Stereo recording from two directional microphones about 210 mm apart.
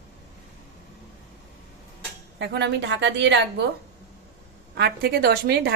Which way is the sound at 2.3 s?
55° right (ahead or behind).